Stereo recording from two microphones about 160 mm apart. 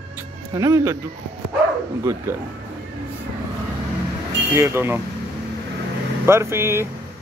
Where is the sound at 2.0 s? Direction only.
15° right (ahead or behind).